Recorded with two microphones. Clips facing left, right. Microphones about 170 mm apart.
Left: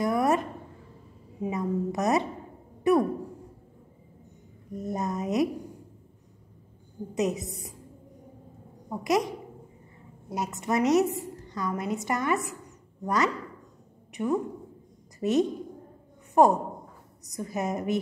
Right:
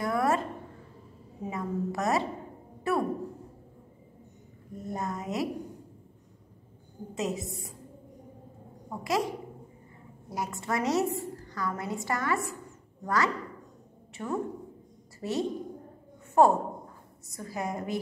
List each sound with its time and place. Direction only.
0.0 s a sound: 20° left (ahead or behind)
1.4 s a woman's voice: 20° left (ahead or behind)
4.7 s speech: 20° left (ahead or behind)
7.3 s a woman's voice: centre (ahead or behind)
8.8 s speech: 20° left (ahead or behind)
10.3 s a woman's voice: 20° left (ahead or behind)